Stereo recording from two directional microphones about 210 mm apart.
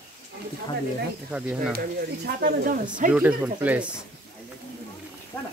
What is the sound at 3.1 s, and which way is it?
Speech, 10° right (ahead or behind).